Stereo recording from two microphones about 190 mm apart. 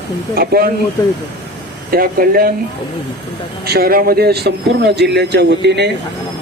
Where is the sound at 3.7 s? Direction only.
50° right (ahead or behind).